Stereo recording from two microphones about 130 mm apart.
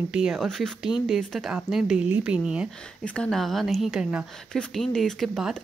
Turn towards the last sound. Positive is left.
turn(degrees=0)  # may be behind; listen again after turning